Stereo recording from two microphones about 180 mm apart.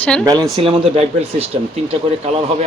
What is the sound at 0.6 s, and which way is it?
Speech, 30° right (ahead or behind).